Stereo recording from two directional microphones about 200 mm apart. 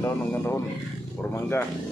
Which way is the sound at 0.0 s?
10° left (ahead or behind).